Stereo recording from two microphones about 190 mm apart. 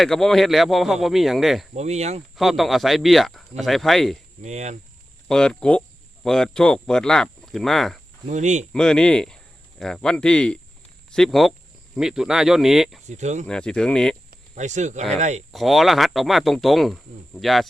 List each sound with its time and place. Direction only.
0.0 s speech: centre (ahead or behind)
1.7 s speech: 35° right (ahead or behind)
2.3 s speech: centre (ahead or behind)
4.4 s speech: 35° right (ahead or behind)
5.3 s speech: 5° left (ahead or behind)
8.3 s speech: 40° right (ahead or behind)
8.7 s speech: 5° left (ahead or behind)
13.1 s speech: 40° right (ahead or behind)
13.5 s speech: 5° left (ahead or behind)
14.3 s cricket: 40° right (ahead or behind)
15.1 s speech: 35° right (ahead or behind)
15.5 s speech: centre (ahead or behind)